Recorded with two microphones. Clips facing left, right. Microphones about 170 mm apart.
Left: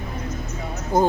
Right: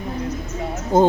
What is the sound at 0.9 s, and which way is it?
Speech, 25° right (ahead or behind).